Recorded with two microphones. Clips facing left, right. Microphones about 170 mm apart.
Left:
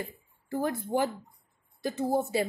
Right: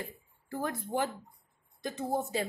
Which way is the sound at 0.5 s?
10° left (ahead or behind).